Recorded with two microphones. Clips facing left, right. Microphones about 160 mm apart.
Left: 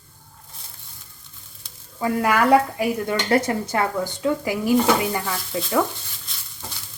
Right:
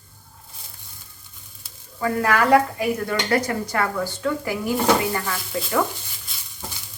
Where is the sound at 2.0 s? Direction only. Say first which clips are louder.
Left 1 dB; 15° left (ahead or behind).